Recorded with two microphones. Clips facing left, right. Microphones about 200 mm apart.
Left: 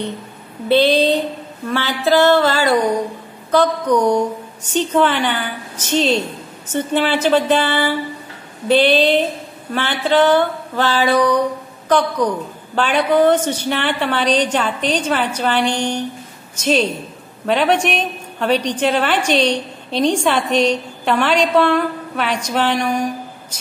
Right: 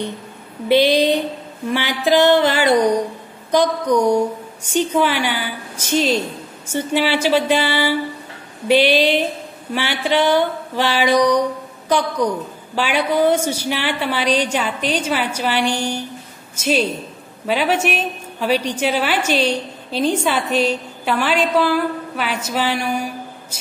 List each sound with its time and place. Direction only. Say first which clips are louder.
0.7 s a woman's voice: left 1 dB; 15° right (ahead or behind)